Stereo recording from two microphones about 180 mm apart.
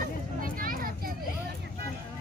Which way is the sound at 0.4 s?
50° right (ahead or behind).